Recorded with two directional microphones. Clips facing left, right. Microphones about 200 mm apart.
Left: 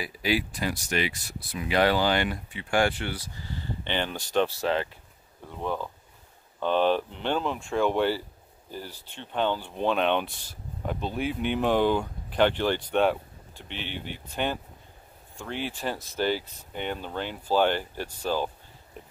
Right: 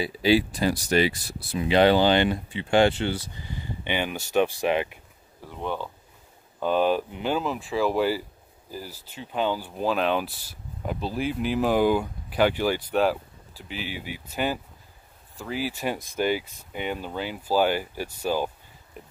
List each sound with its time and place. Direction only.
0.0 s speech: 30° right (ahead or behind)
5.4 s speech: centre (ahead or behind)
19.0 s a sound: 5° right (ahead or behind)